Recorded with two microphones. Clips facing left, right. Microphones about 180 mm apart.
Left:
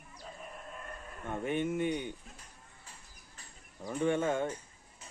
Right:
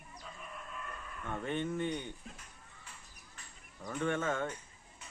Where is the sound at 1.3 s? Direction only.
10° left (ahead or behind).